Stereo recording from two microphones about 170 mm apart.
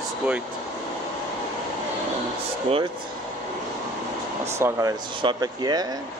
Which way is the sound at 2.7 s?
35° right (ahead or behind).